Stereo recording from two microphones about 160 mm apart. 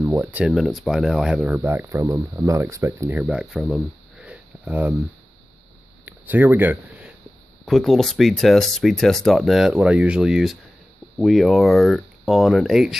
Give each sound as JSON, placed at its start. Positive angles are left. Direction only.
{"t": 0.0, "sound": "speech", "side_deg": -15}
{"t": 0.5, "sound": "speech", "side_deg": 0}
{"t": 1.5, "sound": "speech", "side_deg": -15}
{"t": 6.0, "sound": "speech", "side_deg": -10}
{"t": 7.6, "sound": "speech", "side_deg": 0}